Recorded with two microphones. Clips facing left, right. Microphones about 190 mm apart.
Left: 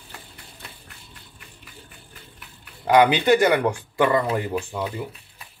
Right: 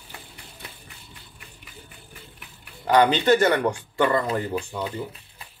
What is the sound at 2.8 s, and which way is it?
Speech, 10° left (ahead or behind).